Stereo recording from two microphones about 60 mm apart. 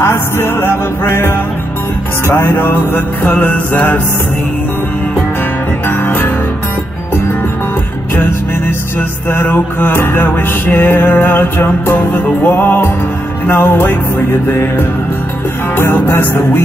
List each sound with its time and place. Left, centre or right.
0.0 s music: left
5.9 s music: left
9.3 s music: left